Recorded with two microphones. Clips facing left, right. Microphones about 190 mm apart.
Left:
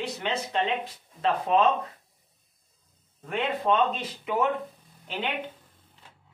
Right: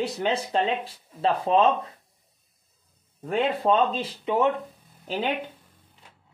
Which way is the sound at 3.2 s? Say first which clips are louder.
Right 4 dB; 35° right (ahead or behind).